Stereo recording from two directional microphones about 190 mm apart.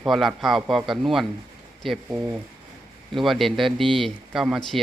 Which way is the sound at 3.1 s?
Centre (ahead or behind).